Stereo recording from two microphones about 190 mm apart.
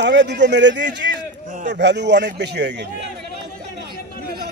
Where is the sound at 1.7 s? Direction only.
65° right (ahead or behind).